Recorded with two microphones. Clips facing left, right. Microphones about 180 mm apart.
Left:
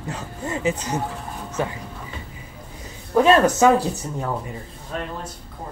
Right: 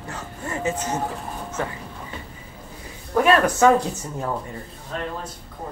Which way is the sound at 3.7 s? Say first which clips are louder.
Even; 5° left (ahead or behind).